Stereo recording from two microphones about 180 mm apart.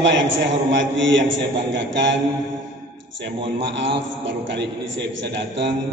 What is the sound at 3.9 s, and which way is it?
A man's voice, 85° right.